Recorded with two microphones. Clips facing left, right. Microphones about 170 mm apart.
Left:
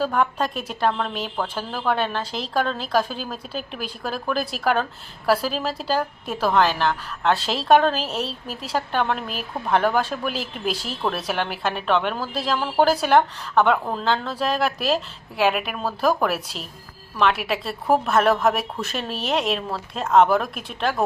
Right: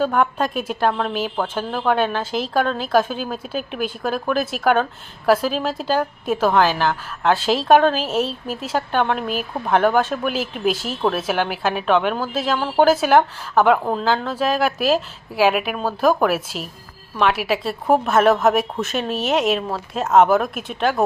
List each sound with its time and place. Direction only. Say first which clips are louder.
0.0 s a woman's voice: right 3 dB; centre (ahead or behind)